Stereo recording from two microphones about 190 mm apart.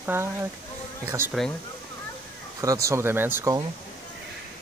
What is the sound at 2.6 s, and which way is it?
Speech, 15° right (ahead or behind).